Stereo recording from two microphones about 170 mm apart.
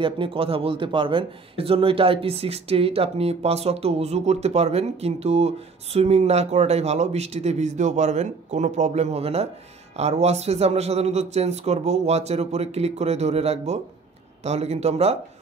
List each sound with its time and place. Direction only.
0.0 s speech: 30° right (ahead or behind)